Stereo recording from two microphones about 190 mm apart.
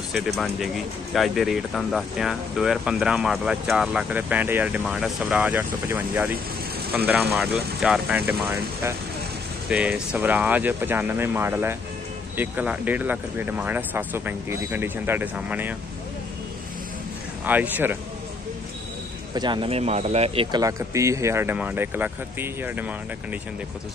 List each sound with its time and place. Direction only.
1.1 s speech: centre (ahead or behind)
9.7 s speech: 5° right (ahead or behind)
17.5 s speech: 10° right (ahead or behind)
19.3 s speech: 25° right (ahead or behind)
20.6 s speech: 15° right (ahead or behind)